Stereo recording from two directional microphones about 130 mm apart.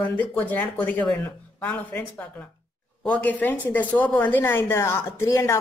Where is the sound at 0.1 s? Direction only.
10° left (ahead or behind).